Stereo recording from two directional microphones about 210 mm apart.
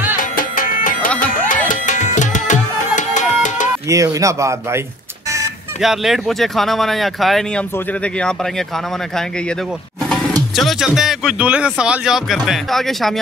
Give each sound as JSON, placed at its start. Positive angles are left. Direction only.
{"t": 0.2, "sound": "music", "side_deg": 40}
{"t": 3.9, "sound": "a man's voice", "side_deg": -15}
{"t": 5.8, "sound": "speech", "side_deg": 0}
{"t": 10.5, "sound": "speech", "side_deg": 0}